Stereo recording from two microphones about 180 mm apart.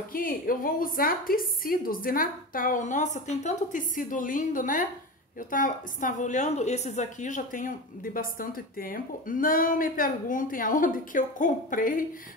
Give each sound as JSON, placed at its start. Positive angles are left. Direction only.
{"t": 0.1, "sound": "a woman's voice", "side_deg": 50}